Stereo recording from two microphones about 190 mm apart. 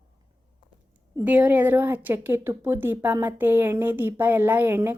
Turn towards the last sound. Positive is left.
turn(degrees=-10)  # may be behind; listen again after turning